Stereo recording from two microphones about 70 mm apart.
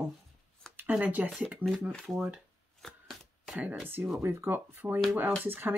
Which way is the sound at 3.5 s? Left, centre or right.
Centre.